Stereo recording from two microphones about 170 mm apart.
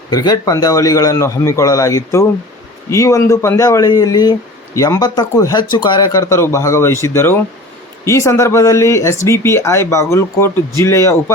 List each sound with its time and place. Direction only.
0.1 s speech: 25° left (ahead or behind)